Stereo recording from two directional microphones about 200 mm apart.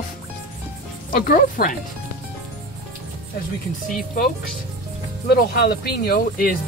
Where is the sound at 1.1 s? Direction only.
45° left (ahead or behind).